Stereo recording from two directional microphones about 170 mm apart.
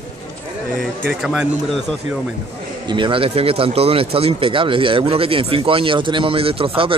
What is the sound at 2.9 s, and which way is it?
Speech, 30° right (ahead or behind).